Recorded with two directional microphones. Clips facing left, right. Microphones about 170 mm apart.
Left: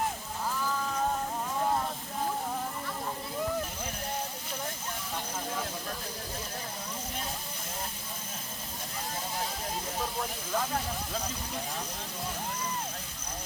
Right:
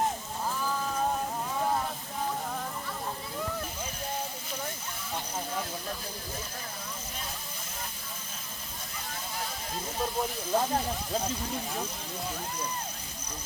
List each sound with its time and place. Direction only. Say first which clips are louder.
10.5 s speech: right 4 dB; 30° right (ahead or behind)